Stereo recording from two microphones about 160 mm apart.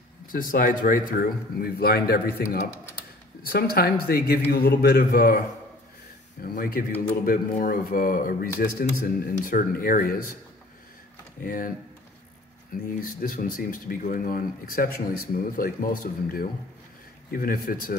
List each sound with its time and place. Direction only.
0.3 s speech: 60° left (ahead or behind)
3.4 s a man's voice: 70° left (ahead or behind)
6.4 s speech: 65° left (ahead or behind)
11.4 s speech: 60° left (ahead or behind)
12.7 s speech: 60° left (ahead or behind)